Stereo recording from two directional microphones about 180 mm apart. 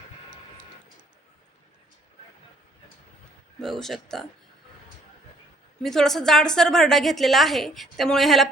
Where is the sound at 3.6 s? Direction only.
Centre (ahead or behind).